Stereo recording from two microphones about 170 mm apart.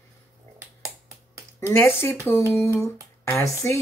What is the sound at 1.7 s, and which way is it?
Speech, 15° left (ahead or behind).